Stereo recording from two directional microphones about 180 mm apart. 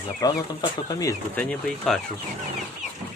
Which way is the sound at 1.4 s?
5° left (ahead or behind).